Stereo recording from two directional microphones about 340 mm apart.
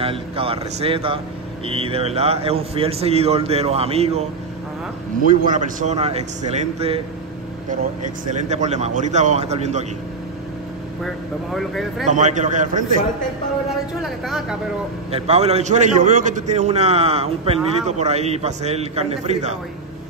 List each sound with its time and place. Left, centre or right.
0.0 s a man's voice: centre
5.4 s a man's voice: right
8.0 s a man's voice: right
11.5 s speech: centre
12.1 s a man's voice: right
13.7 s speech: centre
15.0 s a man's voice: centre